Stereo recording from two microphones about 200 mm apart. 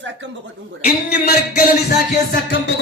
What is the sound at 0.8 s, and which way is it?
Music, 50° left (ahead or behind).